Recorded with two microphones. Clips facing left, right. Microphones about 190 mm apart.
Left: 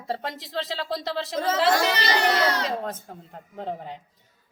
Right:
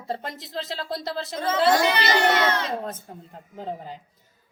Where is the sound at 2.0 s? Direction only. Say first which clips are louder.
Right 2 dB; 35° left (ahead or behind).